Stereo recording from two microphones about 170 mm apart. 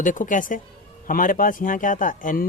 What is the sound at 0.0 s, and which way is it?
Speech, 50° left (ahead or behind).